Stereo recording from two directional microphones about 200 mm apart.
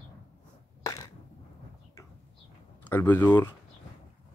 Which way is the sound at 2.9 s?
10° left (ahead or behind).